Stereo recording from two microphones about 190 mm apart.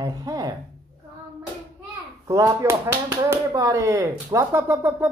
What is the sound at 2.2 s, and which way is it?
Speech, 15° right (ahead or behind).